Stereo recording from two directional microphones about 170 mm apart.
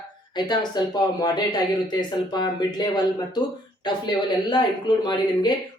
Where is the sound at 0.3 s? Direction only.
25° left (ahead or behind).